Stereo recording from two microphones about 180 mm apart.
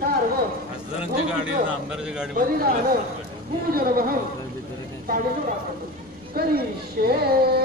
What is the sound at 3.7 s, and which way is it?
Speech, 55° right (ahead or behind).